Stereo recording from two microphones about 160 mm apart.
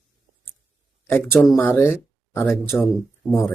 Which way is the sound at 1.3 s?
Centre (ahead or behind).